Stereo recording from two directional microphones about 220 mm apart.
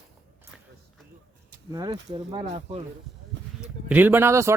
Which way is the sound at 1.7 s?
15° right (ahead or behind).